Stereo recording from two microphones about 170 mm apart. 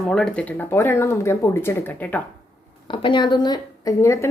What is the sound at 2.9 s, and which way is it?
A woman's voice, 30° left (ahead or behind).